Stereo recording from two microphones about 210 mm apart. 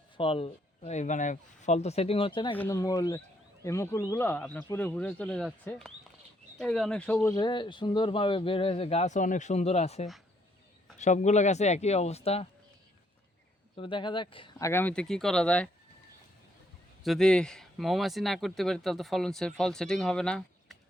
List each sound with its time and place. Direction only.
0.2 s speech: 25° left (ahead or behind); by 5.5 s centre (ahead or behind)
6.6 s speech: centre (ahead or behind)
7.3 s speech: 20° left (ahead or behind)
13.7 s speech: 25° left (ahead or behind)
14.7 s speech: 10° left (ahead or behind)
17.0 s speech: centre (ahead or behind)